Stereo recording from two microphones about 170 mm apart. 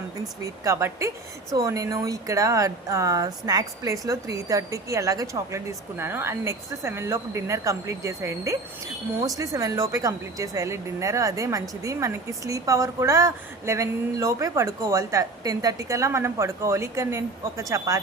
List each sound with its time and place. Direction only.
0.4 s a woman's voice: 15° right (ahead or behind)